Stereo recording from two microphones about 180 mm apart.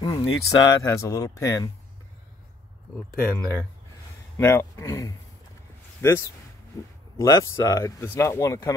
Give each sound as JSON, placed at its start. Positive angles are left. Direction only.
{"t": 0.0, "sound": "speech", "side_deg": 25}
{"t": 3.2, "sound": "speech", "side_deg": 10}